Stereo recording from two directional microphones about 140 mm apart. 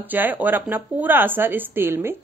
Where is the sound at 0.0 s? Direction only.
15° right (ahead or behind).